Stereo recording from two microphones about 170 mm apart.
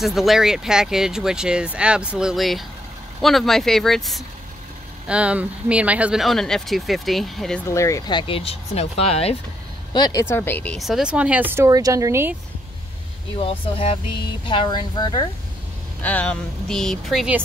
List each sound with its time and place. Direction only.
0.0 s speech: centre (ahead or behind)
7.6 s speech: 15° left (ahead or behind); by 9.4 s 35° left (ahead or behind)
9.9 s speech: 25° left (ahead or behind)
10.2 s speech: 15° left (ahead or behind); by 12.4 s 15° right (ahead or behind)
13.4 s speech: 35° left (ahead or behind)
16.0 s speech: 10° left (ahead or behind)